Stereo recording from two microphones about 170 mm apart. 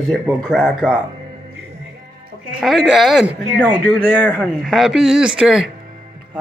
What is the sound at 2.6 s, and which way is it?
Speech, centre (ahead or behind).